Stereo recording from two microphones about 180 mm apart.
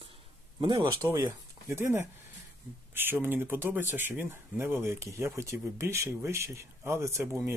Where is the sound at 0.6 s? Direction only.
25° right (ahead or behind).